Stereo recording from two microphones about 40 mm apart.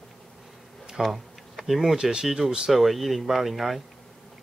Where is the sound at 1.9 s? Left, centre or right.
Right.